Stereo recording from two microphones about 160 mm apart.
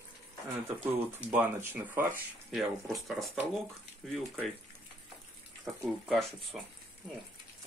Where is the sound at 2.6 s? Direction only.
Centre (ahead or behind).